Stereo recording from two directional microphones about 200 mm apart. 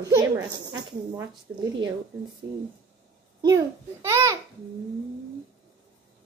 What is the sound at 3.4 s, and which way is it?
Speech, 15° right (ahead or behind).